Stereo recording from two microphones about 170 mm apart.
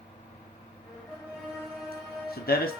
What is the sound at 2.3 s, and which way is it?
Speech, 65° left (ahead or behind).